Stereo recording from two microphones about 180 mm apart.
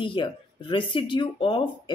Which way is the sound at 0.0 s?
30° left (ahead or behind).